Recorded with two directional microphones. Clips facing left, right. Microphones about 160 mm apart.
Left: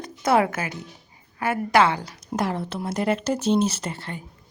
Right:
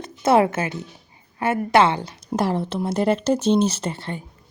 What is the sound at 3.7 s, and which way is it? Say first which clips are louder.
Speech: right 4 dB; 30° right (ahead or behind).